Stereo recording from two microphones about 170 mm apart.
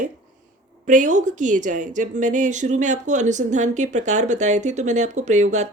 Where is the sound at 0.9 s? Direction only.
45° right (ahead or behind).